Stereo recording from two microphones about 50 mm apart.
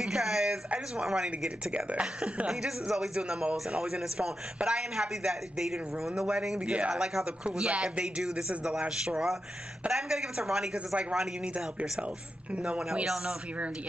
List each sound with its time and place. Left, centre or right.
0.0 s a sound: centre
1.0 s a man's voice: centre
2.5 s a man's voice: centre